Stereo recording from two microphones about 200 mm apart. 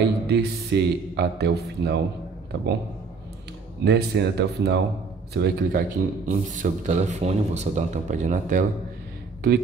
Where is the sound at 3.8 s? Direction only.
55° right (ahead or behind).